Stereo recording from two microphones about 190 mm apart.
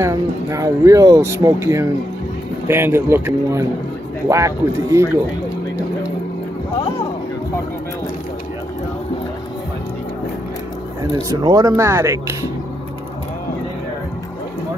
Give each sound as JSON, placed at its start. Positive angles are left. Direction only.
{"t": 0.0, "sound": "speech", "side_deg": -15}
{"t": 11.1, "sound": "speech", "side_deg": -20}